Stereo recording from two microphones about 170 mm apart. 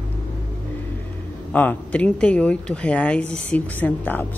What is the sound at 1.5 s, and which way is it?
A woman's voice, 10° left (ahead or behind).